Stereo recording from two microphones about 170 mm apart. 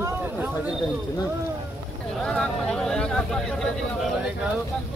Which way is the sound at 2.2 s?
5° left (ahead or behind).